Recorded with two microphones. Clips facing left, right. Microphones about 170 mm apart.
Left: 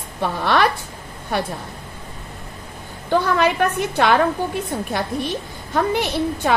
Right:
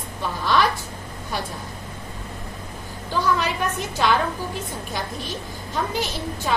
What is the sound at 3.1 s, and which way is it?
A woman's voice, 60° left (ahead or behind).